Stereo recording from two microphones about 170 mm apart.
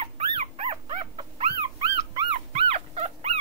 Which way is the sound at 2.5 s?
40° right (ahead or behind).